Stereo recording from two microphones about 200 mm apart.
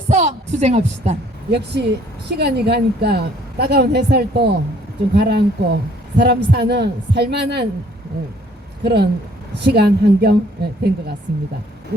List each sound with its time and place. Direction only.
0.1 s a sound: 35° right (ahead or behind)
1.5 s a man's voice: 55° right (ahead or behind)
8.8 s a man's voice: 55° right (ahead or behind)
11.9 s hoot: 50° right (ahead or behind)